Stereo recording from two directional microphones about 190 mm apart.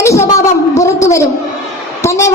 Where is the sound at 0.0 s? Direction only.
15° left (ahead or behind).